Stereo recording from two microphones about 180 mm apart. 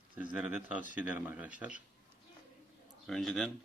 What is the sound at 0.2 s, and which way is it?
Speech, 10° right (ahead or behind).